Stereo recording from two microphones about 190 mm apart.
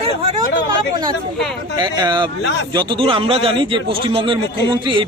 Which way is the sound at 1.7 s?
25° right (ahead or behind).